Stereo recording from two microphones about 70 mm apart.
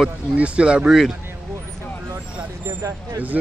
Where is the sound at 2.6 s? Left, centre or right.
Right.